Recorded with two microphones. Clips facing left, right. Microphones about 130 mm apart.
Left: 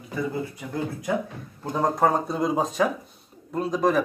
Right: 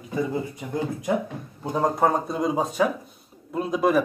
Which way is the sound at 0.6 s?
20° right (ahead or behind).